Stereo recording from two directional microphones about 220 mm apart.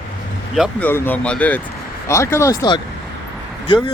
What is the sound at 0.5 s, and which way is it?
Speech, centre (ahead or behind).